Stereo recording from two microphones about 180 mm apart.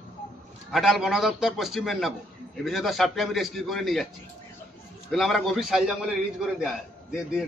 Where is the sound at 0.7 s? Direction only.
Centre (ahead or behind).